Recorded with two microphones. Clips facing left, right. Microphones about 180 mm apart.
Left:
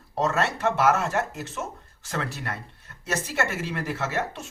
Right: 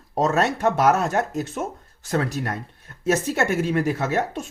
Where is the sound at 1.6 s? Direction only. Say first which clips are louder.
Right 5 dB; 45° right (ahead or behind).